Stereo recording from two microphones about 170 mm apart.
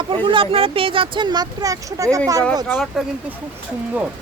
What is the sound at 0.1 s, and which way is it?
Speech, 30° right (ahead or behind).